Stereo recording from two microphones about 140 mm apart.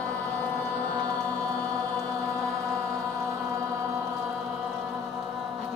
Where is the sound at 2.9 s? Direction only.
20° right (ahead or behind).